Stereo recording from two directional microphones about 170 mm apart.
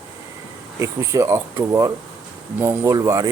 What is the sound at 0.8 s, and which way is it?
Speech, 15° right (ahead or behind).